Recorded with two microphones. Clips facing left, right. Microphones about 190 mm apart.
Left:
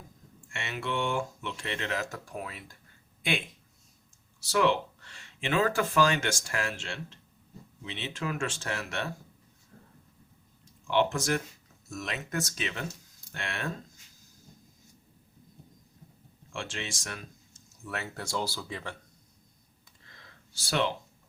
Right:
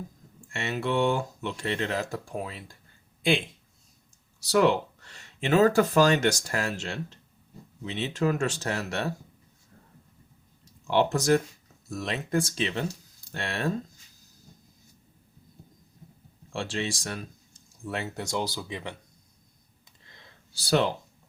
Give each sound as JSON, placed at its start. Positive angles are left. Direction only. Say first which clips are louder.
{"t": 0.5, "sound": "speech", "louder": "right 6 dB", "side_deg": -40}
{"t": 4.4, "sound": "speech", "louder": "right 4 dB", "side_deg": -40}
{"t": 10.8, "sound": "speech", "louder": "right 4 dB", "side_deg": -40}
{"t": 16.5, "sound": "speech", "louder": "right 7 dB", "side_deg": -35}
{"t": 20.5, "sound": "speech", "louder": "right 5 dB", "side_deg": -35}